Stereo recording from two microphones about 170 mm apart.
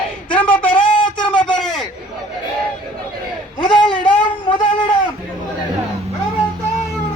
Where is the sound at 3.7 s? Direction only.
5° left (ahead or behind).